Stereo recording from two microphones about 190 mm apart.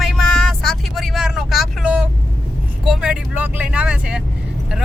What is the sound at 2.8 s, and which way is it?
Speech, 5° right (ahead or behind).